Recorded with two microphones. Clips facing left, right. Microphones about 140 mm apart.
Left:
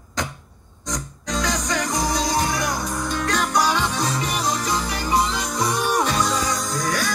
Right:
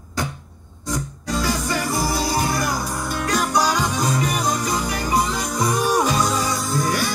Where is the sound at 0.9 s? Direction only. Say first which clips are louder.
Right 3 dB; 5° right (ahead or behind).